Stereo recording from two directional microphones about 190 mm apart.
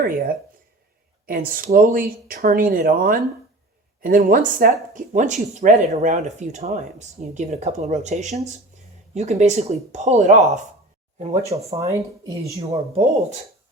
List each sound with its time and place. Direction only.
0.0 s speech: 50° right (ahead or behind)
11.4 s speech: 15° right (ahead or behind)
12.5 s speech: 30° right (ahead or behind)